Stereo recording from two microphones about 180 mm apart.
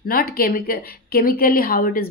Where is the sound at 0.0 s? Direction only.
55° left (ahead or behind).